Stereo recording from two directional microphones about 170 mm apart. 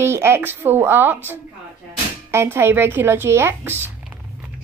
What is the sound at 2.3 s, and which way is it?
A woman's voice, 15° right (ahead or behind).